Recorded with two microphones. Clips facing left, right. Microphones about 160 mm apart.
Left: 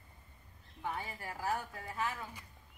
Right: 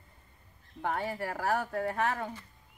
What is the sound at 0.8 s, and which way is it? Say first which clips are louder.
Speech: right 8 dB; 70° right (ahead or behind).